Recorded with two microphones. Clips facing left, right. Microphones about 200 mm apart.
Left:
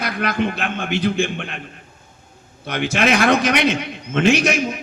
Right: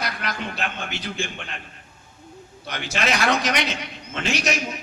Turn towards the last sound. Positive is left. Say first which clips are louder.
# left 9 dB
turn(degrees=55)  # may be behind; listen again after turning